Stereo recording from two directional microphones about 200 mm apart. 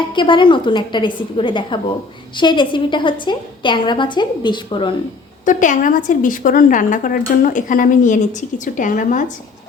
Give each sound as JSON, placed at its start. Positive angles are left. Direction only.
{"t": 0.1, "sound": "a woman's voice", "side_deg": 25}
{"t": 5.5, "sound": "speech", "side_deg": 40}